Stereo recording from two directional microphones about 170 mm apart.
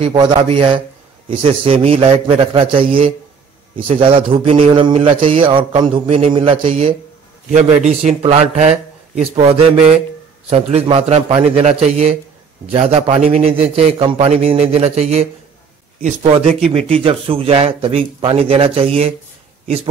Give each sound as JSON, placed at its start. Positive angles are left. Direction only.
{"t": 0.0, "sound": "a man's voice", "side_deg": -25}
{"t": 8.2, "sound": "speech", "side_deg": -40}